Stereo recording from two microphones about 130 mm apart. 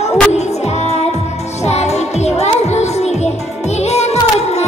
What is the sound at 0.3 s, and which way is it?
Music, 60° left (ahead or behind).